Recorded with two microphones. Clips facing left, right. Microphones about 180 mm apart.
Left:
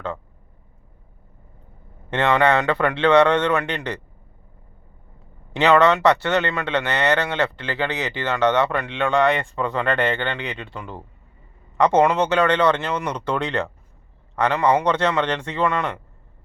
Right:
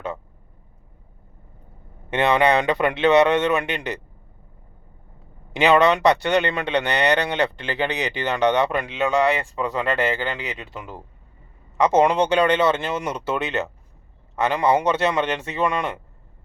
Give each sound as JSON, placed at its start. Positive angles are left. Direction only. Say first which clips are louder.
{"t": 2.0, "sound": "speech", "louder": "even", "side_deg": -15}
{"t": 5.5, "sound": "speech", "louder": "left 1 dB", "side_deg": -10}